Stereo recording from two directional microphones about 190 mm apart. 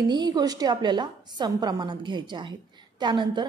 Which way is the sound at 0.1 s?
20° right (ahead or behind).